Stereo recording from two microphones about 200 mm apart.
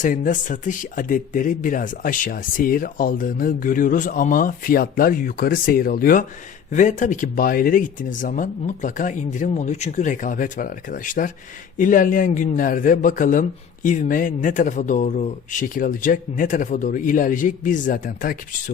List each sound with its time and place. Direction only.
0.0 s speech: 40° left (ahead or behind)